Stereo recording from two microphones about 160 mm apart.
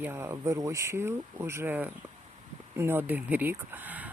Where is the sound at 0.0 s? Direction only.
15° right (ahead or behind).